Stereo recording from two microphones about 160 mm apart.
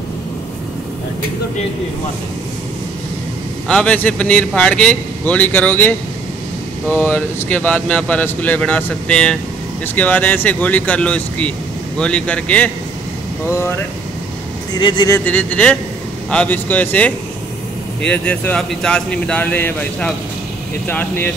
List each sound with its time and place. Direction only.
3.6 s speech: 5° left (ahead or behind)
14.7 s speech: 30° left (ahead or behind)
15.1 s speech: 10° left (ahead or behind)